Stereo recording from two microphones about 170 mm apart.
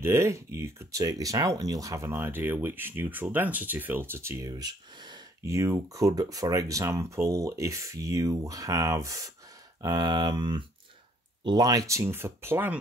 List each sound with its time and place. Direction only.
0.0 s speech: 15° right (ahead or behind)